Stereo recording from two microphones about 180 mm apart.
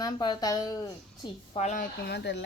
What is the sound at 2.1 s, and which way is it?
Speech, 70° left (ahead or behind).